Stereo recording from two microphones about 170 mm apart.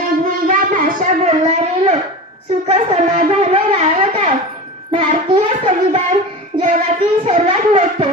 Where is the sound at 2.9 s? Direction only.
45° right (ahead or behind).